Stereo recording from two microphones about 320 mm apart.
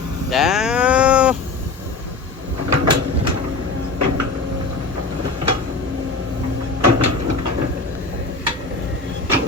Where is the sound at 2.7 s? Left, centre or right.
Right.